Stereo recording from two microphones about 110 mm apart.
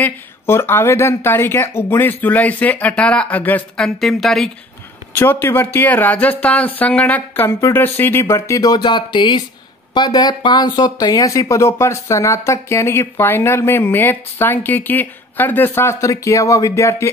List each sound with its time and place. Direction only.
0.0 s speech: 20° left (ahead or behind)
3.8 s speech: centre (ahead or behind)
5.1 s speech: 20° left (ahead or behind)